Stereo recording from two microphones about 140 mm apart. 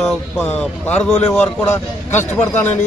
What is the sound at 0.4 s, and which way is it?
A man's voice, 15° left (ahead or behind).